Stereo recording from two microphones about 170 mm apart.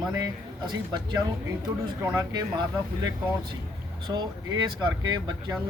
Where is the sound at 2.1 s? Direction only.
25° right (ahead or behind).